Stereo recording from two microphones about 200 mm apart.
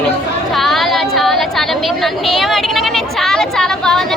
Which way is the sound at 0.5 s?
Centre (ahead or behind).